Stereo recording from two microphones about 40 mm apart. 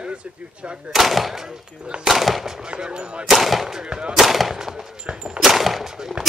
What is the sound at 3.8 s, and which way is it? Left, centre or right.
Speech, right.